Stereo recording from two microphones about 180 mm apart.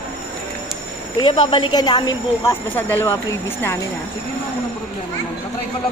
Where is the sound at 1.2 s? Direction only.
25° left (ahead or behind).